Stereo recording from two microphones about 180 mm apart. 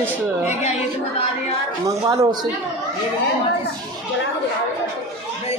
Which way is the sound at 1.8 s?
20° right (ahead or behind).